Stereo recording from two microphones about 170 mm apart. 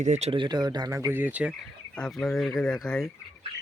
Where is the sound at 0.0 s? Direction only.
40° right (ahead or behind); by 1.5 s 10° right (ahead or behind).